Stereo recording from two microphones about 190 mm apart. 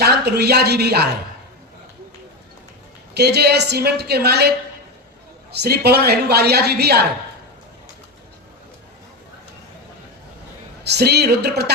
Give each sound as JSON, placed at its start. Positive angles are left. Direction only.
{"t": 0.0, "sound": "a woman's voice", "side_deg": -60}
{"t": 3.2, "sound": "a woman's voice", "side_deg": -60}
{"t": 10.8, "sound": "a woman's voice", "side_deg": -60}